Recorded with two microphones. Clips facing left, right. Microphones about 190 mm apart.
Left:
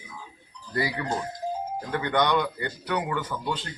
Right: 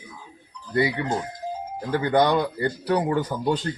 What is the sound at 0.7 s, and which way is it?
Speech, 25° right (ahead or behind).